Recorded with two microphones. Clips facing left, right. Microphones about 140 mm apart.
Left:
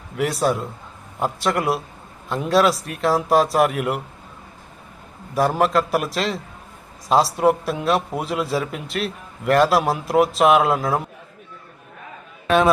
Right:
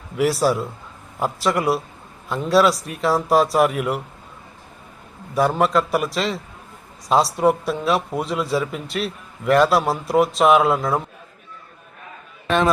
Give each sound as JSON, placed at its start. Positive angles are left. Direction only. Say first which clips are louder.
{"t": 0.2, "sound": "speech", "louder": "right 2 dB", "side_deg": 0}
{"t": 5.3, "sound": "speech", "louder": "even", "side_deg": 0}
{"t": 12.5, "sound": "a man's voice", "louder": "left 2 dB", "side_deg": 5}